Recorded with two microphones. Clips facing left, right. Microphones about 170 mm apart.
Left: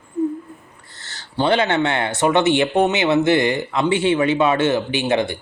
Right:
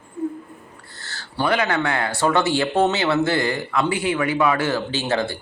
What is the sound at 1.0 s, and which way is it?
Speech, 20° left (ahead or behind).